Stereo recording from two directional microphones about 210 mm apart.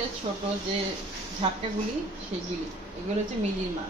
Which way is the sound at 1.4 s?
25° right (ahead or behind).